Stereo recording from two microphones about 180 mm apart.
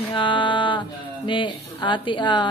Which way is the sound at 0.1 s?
25° left (ahead or behind).